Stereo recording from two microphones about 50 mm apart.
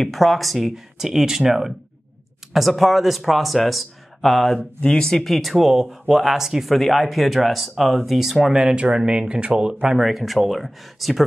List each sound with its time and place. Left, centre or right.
0.0 s speech: centre
4.6 s speech: left
5.0 s speech: centre
8.7 s speech: centre
9.3 s speech: right
9.6 s speech: centre
9.9 s speech: centre